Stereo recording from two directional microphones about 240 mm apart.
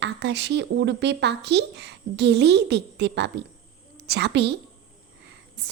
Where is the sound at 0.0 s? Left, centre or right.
Right.